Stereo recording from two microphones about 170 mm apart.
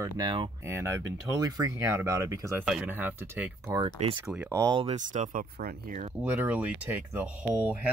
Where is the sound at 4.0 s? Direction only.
40° right (ahead or behind).